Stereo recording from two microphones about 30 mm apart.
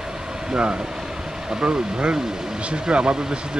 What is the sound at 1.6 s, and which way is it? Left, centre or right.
Speech, right.